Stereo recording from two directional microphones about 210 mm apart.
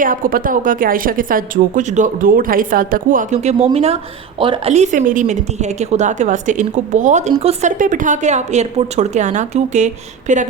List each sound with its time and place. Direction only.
0.0 s speech: 40° right (ahead or behind)